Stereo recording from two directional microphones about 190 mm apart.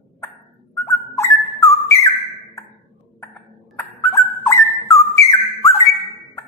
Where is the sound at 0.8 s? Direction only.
15° left (ahead or behind).